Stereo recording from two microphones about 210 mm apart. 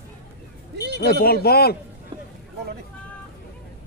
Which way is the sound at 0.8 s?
50° right (ahead or behind).